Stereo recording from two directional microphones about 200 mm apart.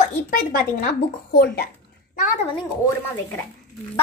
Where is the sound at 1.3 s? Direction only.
50° left (ahead or behind).